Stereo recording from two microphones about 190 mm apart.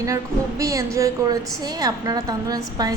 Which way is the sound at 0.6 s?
15° right (ahead or behind).